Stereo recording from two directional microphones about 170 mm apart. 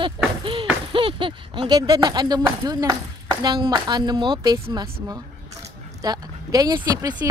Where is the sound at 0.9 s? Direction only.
30° right (ahead or behind).